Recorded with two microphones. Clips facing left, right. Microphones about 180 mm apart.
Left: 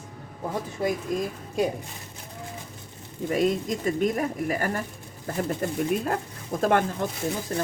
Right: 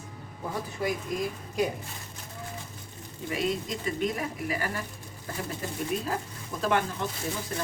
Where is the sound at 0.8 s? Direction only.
20° left (ahead or behind).